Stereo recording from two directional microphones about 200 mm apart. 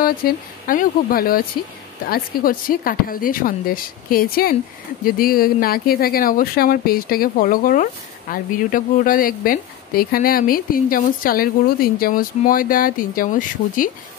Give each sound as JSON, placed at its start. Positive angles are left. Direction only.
{"t": 0.0, "sound": "speech", "side_deg": 45}